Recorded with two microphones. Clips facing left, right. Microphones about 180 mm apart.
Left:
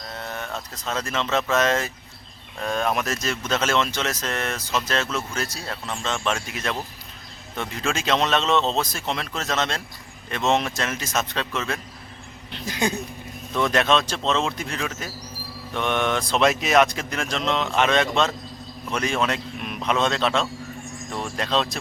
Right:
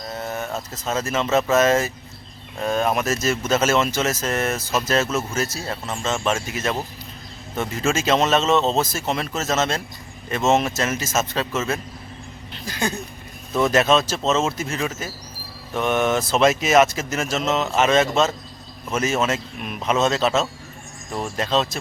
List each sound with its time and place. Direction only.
0.2 s speech: 5° right (ahead or behind)
12.6 s a sound: 20° left (ahead or behind)
13.5 s speech: 5° right (ahead or behind)